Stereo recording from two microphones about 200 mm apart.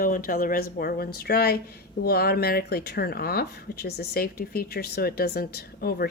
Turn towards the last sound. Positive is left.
turn(degrees=50)  # may be behind; listen again after turning